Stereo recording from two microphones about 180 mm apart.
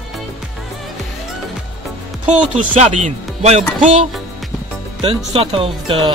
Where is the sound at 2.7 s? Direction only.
40° right (ahead or behind).